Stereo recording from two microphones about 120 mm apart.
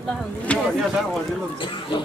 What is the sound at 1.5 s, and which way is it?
Speech, 45° left (ahead or behind).